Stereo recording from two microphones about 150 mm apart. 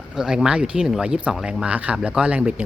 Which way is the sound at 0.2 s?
5° right (ahead or behind).